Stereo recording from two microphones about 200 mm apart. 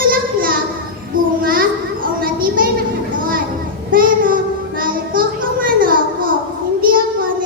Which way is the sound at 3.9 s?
45° right (ahead or behind).